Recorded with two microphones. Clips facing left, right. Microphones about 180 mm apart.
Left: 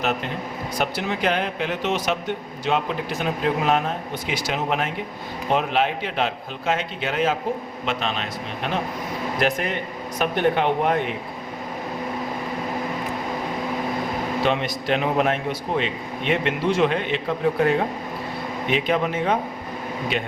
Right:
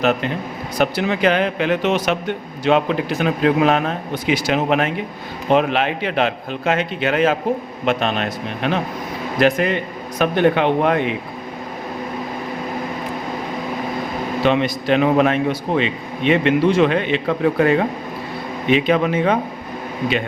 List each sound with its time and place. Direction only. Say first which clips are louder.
0.0 s speech: right 6 dB; 90° right
0.8 s a man's voice: right 7 dB; 80° right
7.9 s speech: right 7 dB; 60° right (ahead or behind)
9.4 s speech: right 8 dB; 90° right
14.4 s speech: right 7 dB; 90° right